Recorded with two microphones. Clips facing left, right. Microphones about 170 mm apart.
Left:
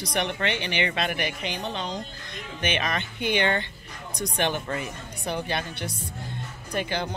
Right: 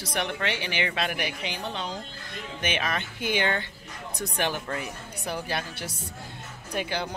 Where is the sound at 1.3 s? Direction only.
55° left (ahead or behind).